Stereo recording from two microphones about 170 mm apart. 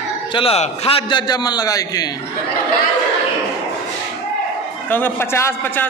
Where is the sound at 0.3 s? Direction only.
35° left (ahead or behind).